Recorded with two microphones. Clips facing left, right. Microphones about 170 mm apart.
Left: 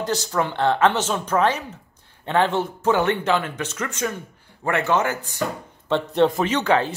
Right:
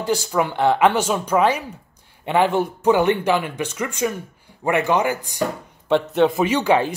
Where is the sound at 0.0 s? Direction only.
10° right (ahead or behind).